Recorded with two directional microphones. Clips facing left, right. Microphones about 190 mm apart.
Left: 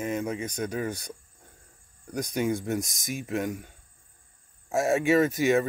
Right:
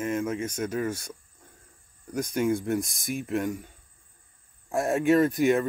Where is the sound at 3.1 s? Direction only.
5° left (ahead or behind).